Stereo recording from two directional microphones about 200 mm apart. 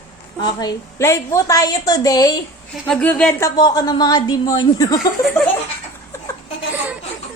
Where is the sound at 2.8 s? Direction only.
5° left (ahead or behind).